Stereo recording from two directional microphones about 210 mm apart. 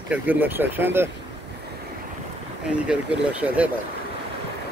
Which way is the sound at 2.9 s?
5° right (ahead or behind).